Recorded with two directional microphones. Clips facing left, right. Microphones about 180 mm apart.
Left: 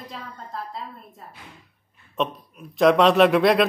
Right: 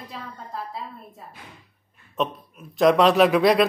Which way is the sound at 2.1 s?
Centre (ahead or behind).